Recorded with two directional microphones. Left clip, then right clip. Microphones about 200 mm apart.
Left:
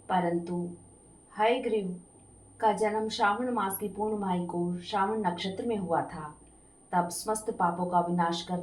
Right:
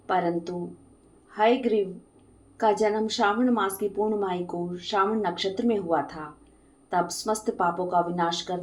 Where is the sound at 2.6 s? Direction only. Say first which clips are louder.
Right 4 dB; 40° right (ahead or behind).